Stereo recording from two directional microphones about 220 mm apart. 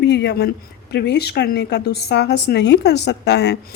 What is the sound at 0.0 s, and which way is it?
Speech, 50° left (ahead or behind).